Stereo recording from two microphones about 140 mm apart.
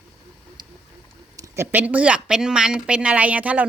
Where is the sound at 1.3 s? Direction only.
25° right (ahead or behind).